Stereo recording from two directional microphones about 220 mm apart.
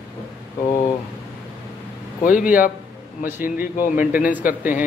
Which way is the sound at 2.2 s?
40° left (ahead or behind).